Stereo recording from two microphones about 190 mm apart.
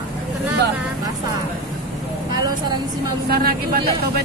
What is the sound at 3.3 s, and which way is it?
Speech, 50° right (ahead or behind).